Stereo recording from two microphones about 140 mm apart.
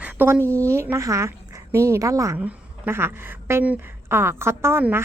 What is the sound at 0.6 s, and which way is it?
A woman's voice, 20° right (ahead or behind).